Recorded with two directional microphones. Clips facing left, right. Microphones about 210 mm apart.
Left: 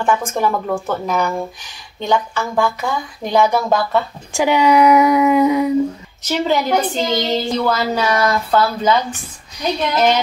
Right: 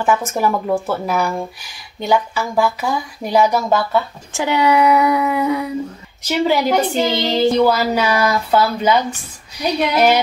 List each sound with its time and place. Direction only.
0.0 s speech: 5° right (ahead or behind)
4.3 s speech: 15° left (ahead or behind)
6.2 s speech: 10° right (ahead or behind)